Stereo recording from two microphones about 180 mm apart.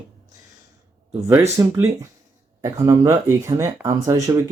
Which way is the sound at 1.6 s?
15° right (ahead or behind).